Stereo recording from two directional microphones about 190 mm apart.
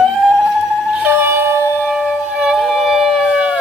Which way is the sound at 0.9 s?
10° right (ahead or behind).